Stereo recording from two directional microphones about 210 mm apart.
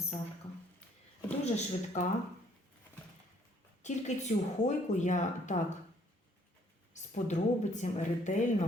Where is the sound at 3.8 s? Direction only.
35° left (ahead or behind).